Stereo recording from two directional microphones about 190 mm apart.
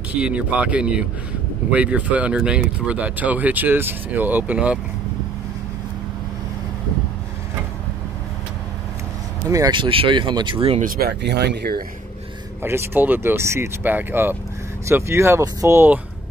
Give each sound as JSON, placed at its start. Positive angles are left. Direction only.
{"t": 0.1, "sound": "speech", "side_deg": -5}
{"t": 9.5, "sound": "speech", "side_deg": -20}
{"t": 10.8, "sound": "speech", "side_deg": -50}
{"t": 12.6, "sound": "speech", "side_deg": -10}